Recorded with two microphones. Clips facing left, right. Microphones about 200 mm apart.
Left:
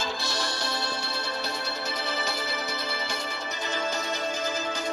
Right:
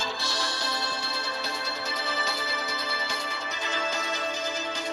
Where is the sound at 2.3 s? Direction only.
45° left (ahead or behind).